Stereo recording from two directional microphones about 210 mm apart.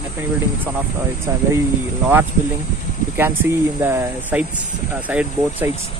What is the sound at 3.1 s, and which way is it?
Speech, 10° right (ahead or behind).